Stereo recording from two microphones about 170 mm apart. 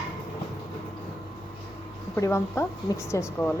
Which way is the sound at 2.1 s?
15° left (ahead or behind).